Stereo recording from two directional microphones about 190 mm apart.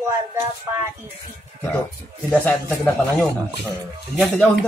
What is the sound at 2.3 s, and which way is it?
A man's voice, 5° left (ahead or behind).